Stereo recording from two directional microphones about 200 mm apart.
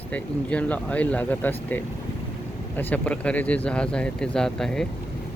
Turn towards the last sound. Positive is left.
turn(degrees=0)  # may be behind; listen again after turning